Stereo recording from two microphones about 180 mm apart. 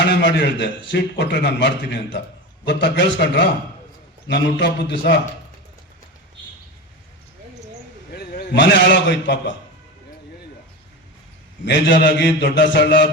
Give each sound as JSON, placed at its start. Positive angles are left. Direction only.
{"t": 0.0, "sound": "a man's voice", "side_deg": 80}
{"t": 8.5, "sound": "a man's voice", "side_deg": 80}
{"t": 11.6, "sound": "a man's voice", "side_deg": 75}